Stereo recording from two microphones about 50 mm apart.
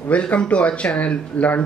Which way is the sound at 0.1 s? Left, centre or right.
Left.